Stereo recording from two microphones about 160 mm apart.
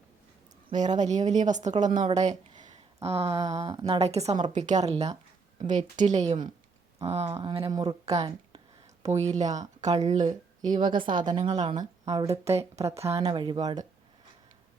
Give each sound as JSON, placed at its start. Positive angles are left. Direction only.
{"t": 0.9, "sound": "a woman's voice", "side_deg": -45}
{"t": 2.6, "sound": "a sound", "side_deg": -45}
{"t": 3.8, "sound": "a woman's voice", "side_deg": -40}
{"t": 7.7, "sound": "a woman's voice", "side_deg": -25}
{"t": 9.0, "sound": "a woman's voice", "side_deg": -45}
{"t": 10.8, "sound": "a woman's voice", "side_deg": -30}
{"t": 11.5, "sound": "a woman's voice", "side_deg": -45}
{"t": 11.8, "sound": "speech", "side_deg": -25}
{"t": 12.3, "sound": "speech", "side_deg": -40}
{"t": 13.2, "sound": "a woman's voice", "side_deg": -30}